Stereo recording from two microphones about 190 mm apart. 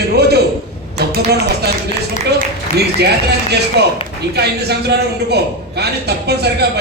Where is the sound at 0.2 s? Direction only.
55° right (ahead or behind).